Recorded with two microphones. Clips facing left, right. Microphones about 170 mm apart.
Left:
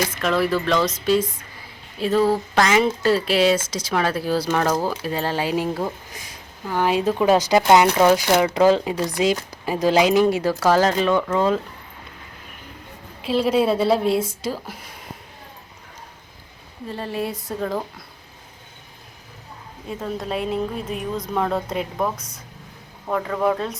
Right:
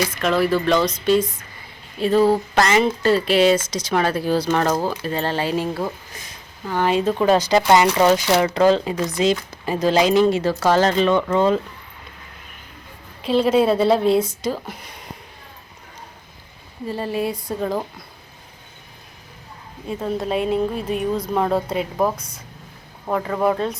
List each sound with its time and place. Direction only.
0.2 s a woman's voice: centre (ahead or behind)
1.2 s speech: 25° left (ahead or behind)
2.0 s a woman's voice: centre (ahead or behind)
13.2 s a woman's voice: 5° left (ahead or behind)
16.8 s a woman's voice: 5° right (ahead or behind)
19.9 s a woman's voice: centre (ahead or behind)